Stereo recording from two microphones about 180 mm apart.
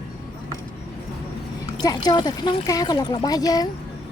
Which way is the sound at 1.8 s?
25° left (ahead or behind).